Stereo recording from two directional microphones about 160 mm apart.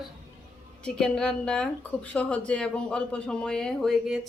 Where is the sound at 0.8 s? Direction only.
5° left (ahead or behind).